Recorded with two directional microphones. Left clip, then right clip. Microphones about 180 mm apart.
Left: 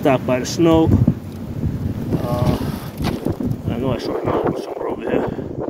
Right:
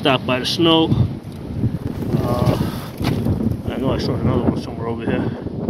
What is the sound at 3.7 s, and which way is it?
Wind, 10° left (ahead or behind).